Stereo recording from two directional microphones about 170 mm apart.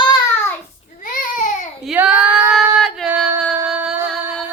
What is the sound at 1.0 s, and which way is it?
Baby cry, 55° left (ahead or behind).